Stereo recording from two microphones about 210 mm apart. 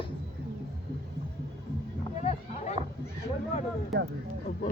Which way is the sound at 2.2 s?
35° left (ahead or behind).